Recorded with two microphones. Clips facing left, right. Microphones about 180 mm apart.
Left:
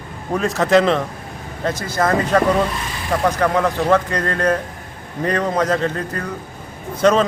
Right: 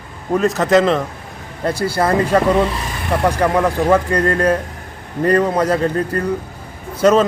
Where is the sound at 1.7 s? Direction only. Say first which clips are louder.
Right 7 dB; 35° right (ahead or behind).